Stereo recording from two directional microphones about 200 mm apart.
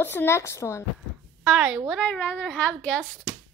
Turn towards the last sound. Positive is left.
turn(degrees=5)  # may be behind; listen again after turning